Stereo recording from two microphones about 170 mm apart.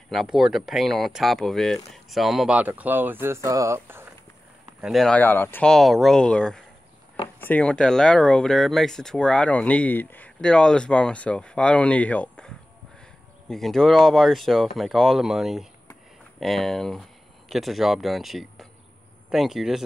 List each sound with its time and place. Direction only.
0.1 s speech: centre (ahead or behind)
4.8 s speech: centre (ahead or behind)